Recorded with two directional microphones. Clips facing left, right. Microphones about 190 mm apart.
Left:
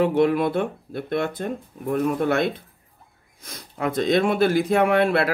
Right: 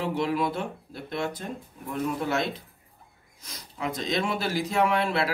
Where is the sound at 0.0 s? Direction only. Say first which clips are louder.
Left 8 dB; 55° left (ahead or behind).